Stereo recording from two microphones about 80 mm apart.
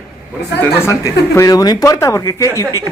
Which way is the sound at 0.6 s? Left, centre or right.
Left.